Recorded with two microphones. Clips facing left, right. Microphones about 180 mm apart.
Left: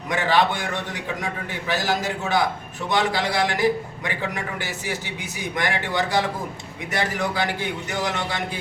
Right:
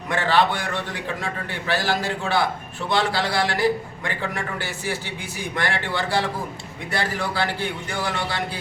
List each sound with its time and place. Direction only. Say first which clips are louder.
0.1 s a man's voice: even; 15° left (ahead or behind)
5.4 s a man's voice: even; 20° left (ahead or behind)